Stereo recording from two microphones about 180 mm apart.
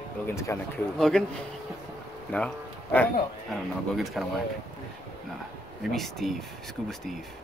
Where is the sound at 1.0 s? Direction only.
Centre (ahead or behind).